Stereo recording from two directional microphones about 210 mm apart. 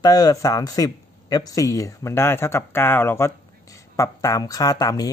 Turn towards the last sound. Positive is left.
turn(degrees=15)  # may be behind; listen again after turning